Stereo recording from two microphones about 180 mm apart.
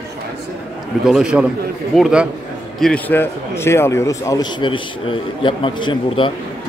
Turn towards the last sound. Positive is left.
turn(degrees=25)  # may be behind; listen again after turning